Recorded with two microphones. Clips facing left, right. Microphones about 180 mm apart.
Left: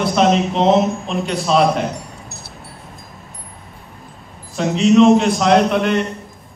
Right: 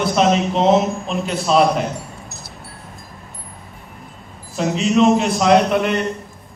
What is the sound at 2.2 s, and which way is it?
Music, 60° left (ahead or behind).